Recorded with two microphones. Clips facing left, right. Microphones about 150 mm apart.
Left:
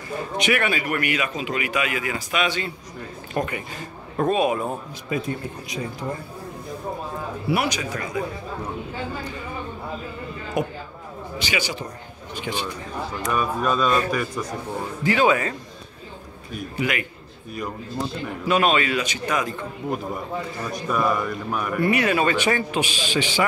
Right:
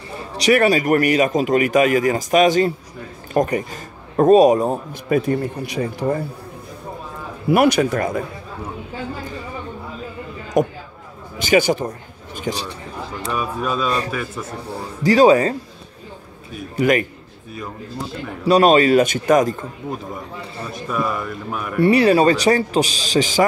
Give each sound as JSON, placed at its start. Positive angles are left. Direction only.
{"t": 0.4, "sound": "speech", "side_deg": -40}
{"t": 5.1, "sound": "speech", "side_deg": -65}
{"t": 7.4, "sound": "speech", "side_deg": -50}
{"t": 10.6, "sound": "speech", "side_deg": -45}
{"t": 13.4, "sound": "a man's voice", "side_deg": -5}
{"t": 13.8, "sound": "speech", "side_deg": -35}
{"t": 14.1, "sound": "a man's voice", "side_deg": 0}
{"t": 15.0, "sound": "speech", "side_deg": -35}
{"t": 16.7, "sound": "speech", "side_deg": -40}
{"t": 18.4, "sound": "speech", "side_deg": -35}
{"t": 20.7, "sound": "a man's voice", "side_deg": 0}
{"t": 21.8, "sound": "speech", "side_deg": -30}